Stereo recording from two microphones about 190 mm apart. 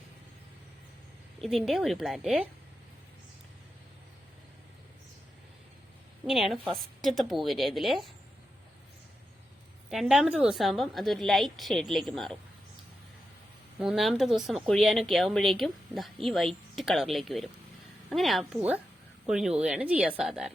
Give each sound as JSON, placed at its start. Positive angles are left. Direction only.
{"t": 1.4, "sound": "a woman's voice", "side_deg": 0}
{"t": 6.2, "sound": "a woman's voice", "side_deg": 0}
{"t": 9.9, "sound": "a woman's voice", "side_deg": 0}
{"t": 13.7, "sound": "a woman's voice", "side_deg": -5}